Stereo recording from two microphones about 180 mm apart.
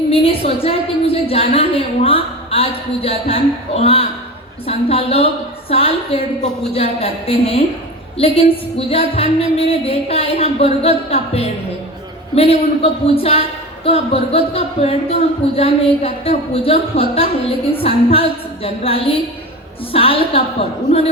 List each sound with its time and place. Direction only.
0.1 s a woman's voice: 30° left (ahead or behind)